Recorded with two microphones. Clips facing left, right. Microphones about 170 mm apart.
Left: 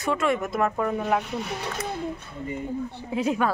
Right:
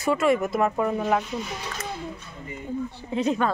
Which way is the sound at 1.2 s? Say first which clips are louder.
Left 1 dB; 60° left (ahead or behind).